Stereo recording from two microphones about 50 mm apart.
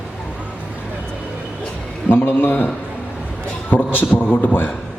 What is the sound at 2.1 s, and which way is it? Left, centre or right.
Speech, left.